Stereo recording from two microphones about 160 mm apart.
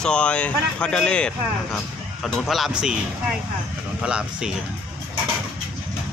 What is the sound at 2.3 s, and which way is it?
Speech, centre (ahead or behind).